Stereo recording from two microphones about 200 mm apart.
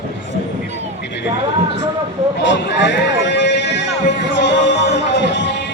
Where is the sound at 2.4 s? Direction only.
60° left (ahead or behind).